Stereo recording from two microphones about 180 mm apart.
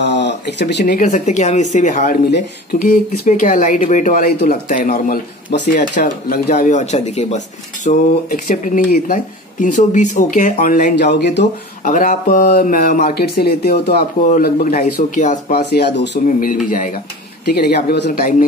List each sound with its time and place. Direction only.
0.0 s a sound: 75° left (ahead or behind)
0.8 s speech: 45° left (ahead or behind)
2.2 s speech: 60° left (ahead or behind); by 11.0 s 45° left (ahead or behind)
11.0 s speech: 70° left (ahead or behind)
11.8 s speech: 45° left (ahead or behind)
14.3 s speech: 45° left (ahead or behind); by 16.4 s 65° left (ahead or behind)
16.4 s speech: 45° left (ahead or behind)
17.6 s speech: 60° left (ahead or behind)